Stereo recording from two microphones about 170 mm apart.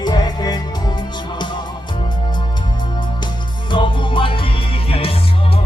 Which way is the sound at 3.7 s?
30° left (ahead or behind).